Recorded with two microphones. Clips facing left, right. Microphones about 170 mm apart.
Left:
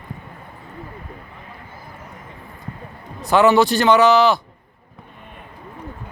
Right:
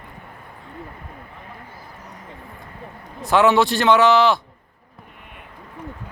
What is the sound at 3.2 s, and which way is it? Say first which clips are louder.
Speech: left 2 dB; centre (ahead or behind).